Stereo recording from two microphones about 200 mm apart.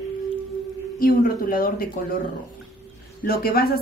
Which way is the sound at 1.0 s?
45° left (ahead or behind).